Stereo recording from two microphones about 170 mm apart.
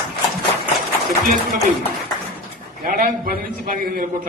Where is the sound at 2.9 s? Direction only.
50° right (ahead or behind).